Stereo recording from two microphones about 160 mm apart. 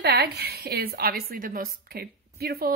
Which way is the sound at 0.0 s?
90° right.